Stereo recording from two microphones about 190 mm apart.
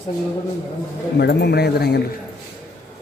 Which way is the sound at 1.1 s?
60° left (ahead or behind).